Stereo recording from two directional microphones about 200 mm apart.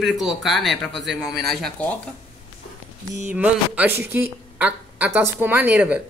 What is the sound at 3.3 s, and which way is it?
A woman's voice, 5° right (ahead or behind).